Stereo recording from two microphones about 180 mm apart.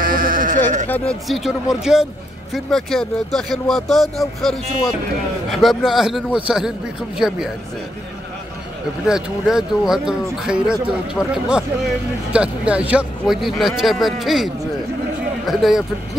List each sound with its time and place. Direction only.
0.0 s bleat: 50° right (ahead or behind)
0.8 s speech: 10° left (ahead or behind)
1.2 s speech: centre (ahead or behind)
9.0 s speech: 5° right (ahead or behind)